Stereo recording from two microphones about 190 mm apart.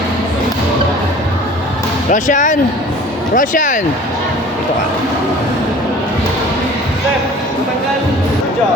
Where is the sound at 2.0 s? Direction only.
40° left (ahead or behind).